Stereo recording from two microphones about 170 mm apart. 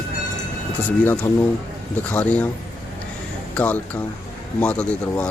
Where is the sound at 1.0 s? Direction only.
10° left (ahead or behind).